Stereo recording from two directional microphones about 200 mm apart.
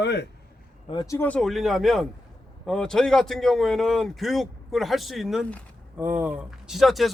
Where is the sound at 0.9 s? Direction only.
15° left (ahead or behind).